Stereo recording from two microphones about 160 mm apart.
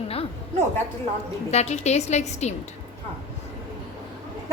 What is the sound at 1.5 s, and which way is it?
A woman's voice, 45° left (ahead or behind).